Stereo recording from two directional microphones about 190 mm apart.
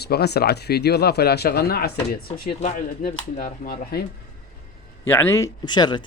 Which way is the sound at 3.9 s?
55° left (ahead or behind).